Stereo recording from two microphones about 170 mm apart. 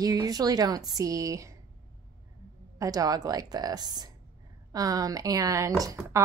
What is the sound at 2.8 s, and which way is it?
A woman's voice, 20° right (ahead or behind).